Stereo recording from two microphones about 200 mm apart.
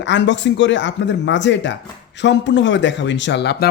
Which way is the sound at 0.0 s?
65° left (ahead or behind).